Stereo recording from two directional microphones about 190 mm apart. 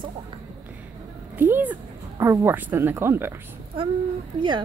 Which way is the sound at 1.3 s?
10° right (ahead or behind).